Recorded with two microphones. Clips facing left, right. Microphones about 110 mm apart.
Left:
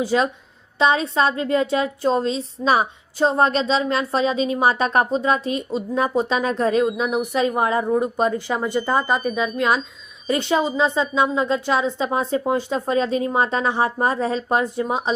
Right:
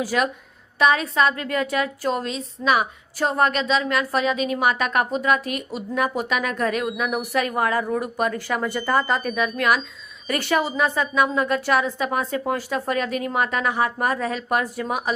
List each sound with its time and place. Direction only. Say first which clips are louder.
0.0 s a woman's voice: left 3 dB; 25° left (ahead or behind)